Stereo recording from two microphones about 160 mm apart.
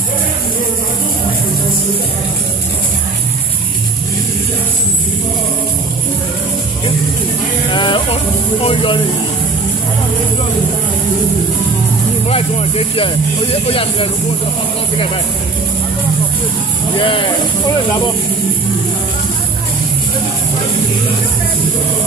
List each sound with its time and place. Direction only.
7.7 s music: 30° left (ahead or behind)
8.6 s speech: 30° left (ahead or behind)
12.3 s speech: 40° left (ahead or behind)
17.0 s speech: 30° left (ahead or behind)